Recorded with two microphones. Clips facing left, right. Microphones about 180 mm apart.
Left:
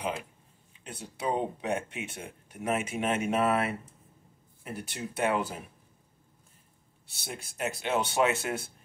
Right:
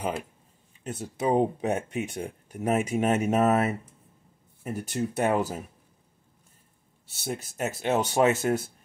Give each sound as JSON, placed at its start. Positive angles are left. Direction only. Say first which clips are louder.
{"t": 0.8, "sound": "speech", "louder": "right 6 dB", "side_deg": -45}
{"t": 7.1, "sound": "speech", "louder": "right 8 dB", "side_deg": -45}